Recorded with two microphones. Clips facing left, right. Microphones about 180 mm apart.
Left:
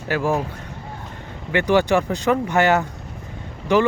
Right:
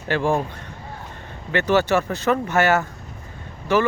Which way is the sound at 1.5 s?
15° left (ahead or behind).